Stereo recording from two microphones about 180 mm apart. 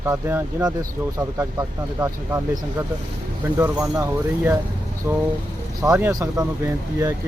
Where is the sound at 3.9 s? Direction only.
15° right (ahead or behind).